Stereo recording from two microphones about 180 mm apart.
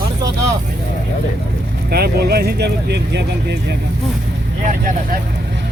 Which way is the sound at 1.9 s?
60° right (ahead or behind).